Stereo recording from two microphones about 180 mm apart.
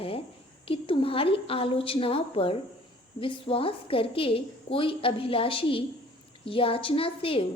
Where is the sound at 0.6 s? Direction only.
30° left (ahead or behind).